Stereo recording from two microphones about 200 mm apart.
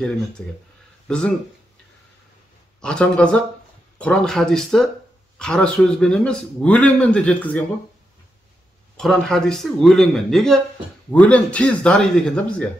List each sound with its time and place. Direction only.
1.0 s speech: 5° left (ahead or behind)
2.8 s speech: 5° left (ahead or behind)
8.9 s speech: centre (ahead or behind)